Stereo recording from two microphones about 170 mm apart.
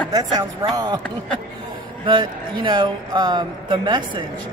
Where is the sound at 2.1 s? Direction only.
30° right (ahead or behind).